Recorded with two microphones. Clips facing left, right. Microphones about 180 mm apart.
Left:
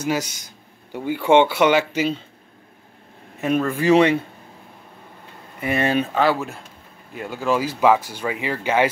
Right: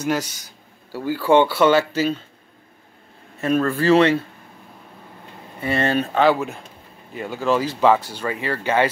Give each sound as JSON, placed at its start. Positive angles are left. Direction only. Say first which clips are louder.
{"t": 0.0, "sound": "speech", "louder": "right 1 dB", "side_deg": 10}
{"t": 3.3, "sound": "speech", "louder": "right 1 dB", "side_deg": 15}
{"t": 5.6, "sound": "speech", "louder": "even", "side_deg": 15}
{"t": 6.3, "sound": "speech", "louder": "right 2 dB", "side_deg": -5}
{"t": 7.2, "sound": "speech", "louder": "right 1 dB", "side_deg": 10}